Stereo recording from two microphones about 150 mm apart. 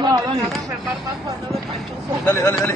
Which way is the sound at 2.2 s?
15° left (ahead or behind).